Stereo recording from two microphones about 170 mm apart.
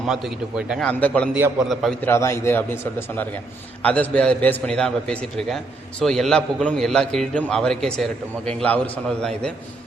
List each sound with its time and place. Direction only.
0.1 s a man's voice: 5° right (ahead or behind)
0.9 s a man's voice: 10° left (ahead or behind)
2.0 s a man's voice: 15° left (ahead or behind)
3.8 s a man's voice: 10° left (ahead or behind)